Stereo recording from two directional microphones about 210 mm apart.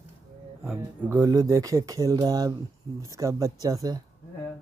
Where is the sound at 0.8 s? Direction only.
15° right (ahead or behind).